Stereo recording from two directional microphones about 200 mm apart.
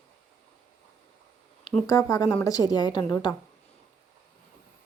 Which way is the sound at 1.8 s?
15° left (ahead or behind).